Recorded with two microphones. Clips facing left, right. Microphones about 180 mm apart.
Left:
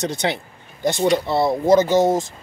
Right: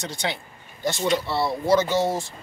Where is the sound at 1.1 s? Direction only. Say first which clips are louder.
Left 5 dB; 50° left (ahead or behind).